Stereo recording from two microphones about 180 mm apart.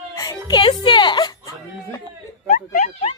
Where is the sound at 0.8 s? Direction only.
25° left (ahead or behind).